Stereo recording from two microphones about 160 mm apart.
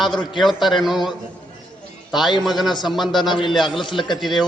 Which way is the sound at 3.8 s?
30° left (ahead or behind).